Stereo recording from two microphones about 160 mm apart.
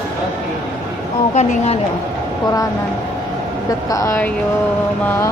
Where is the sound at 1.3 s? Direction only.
45° left (ahead or behind).